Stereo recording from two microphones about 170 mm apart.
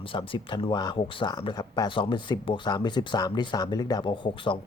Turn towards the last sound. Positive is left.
turn(degrees=30)  # may be behind; listen again after turning